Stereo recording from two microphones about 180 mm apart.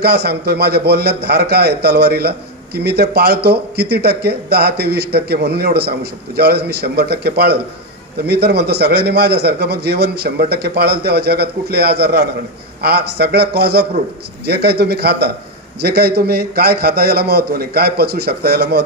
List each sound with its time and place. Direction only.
0.0 s a man's voice: 60° right (ahead or behind)